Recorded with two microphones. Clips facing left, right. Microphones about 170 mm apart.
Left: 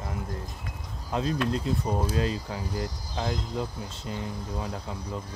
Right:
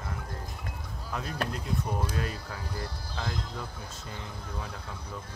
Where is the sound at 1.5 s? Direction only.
25° left (ahead or behind).